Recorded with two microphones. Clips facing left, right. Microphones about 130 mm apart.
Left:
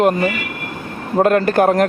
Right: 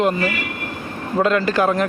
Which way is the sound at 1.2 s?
50° left (ahead or behind).